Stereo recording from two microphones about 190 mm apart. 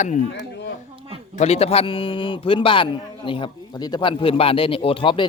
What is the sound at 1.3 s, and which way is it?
A man's voice, 35° left (ahead or behind).